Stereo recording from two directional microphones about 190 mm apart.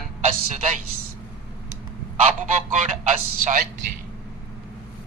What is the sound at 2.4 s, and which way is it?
Honk, 40° right (ahead or behind).